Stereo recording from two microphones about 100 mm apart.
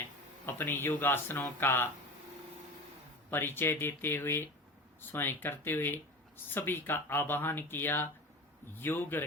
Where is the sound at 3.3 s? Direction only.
20° left (ahead or behind).